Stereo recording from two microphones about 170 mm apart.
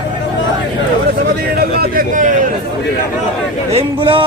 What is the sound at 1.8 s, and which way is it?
Speech, 55° right (ahead or behind).